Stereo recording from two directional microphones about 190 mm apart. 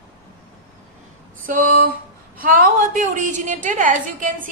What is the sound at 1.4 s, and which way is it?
A woman's voice, 45° right (ahead or behind).